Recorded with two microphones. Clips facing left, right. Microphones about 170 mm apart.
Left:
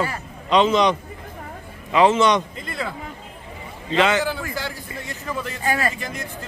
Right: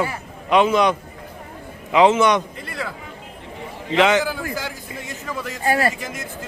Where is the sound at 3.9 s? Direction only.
15° right (ahead or behind).